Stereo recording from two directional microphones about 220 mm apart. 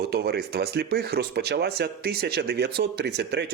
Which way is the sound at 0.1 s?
45° right (ahead or behind).